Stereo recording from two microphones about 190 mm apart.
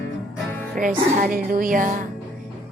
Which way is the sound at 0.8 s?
45° right (ahead or behind).